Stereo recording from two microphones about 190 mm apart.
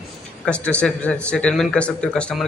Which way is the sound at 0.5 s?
5° left (ahead or behind).